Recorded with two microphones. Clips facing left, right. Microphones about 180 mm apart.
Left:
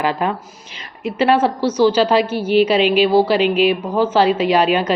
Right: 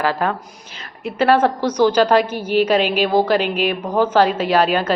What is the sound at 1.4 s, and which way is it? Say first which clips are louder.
A woman's voice: left 1 dB; 10° left (ahead or behind).